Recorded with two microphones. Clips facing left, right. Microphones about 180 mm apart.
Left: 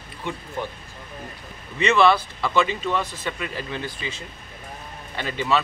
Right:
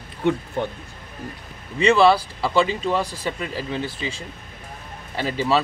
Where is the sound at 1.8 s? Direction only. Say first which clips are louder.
Right 3 dB; 30° right (ahead or behind).